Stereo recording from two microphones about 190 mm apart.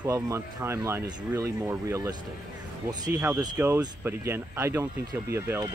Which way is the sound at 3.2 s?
10° right (ahead or behind).